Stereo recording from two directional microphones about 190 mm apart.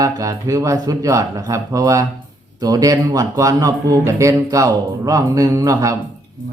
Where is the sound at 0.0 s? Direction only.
20° right (ahead or behind).